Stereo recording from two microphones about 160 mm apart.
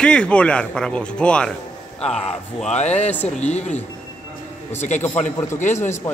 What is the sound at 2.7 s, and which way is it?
Speech, 45° left (ahead or behind).